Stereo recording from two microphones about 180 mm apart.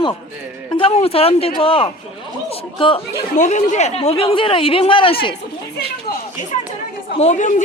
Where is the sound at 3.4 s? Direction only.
40° left (ahead or behind).